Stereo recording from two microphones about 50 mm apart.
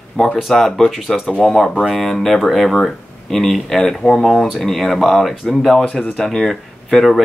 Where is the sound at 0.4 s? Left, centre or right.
Centre.